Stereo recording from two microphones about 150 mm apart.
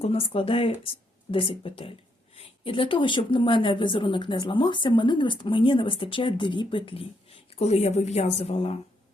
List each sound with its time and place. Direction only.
0.0 s a woman's voice: 40° left (ahead or behind)